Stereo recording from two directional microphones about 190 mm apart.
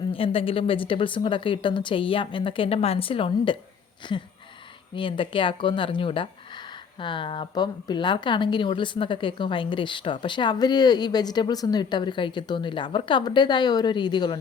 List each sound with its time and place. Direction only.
0.1 s a woman's voice: 30° left (ahead or behind)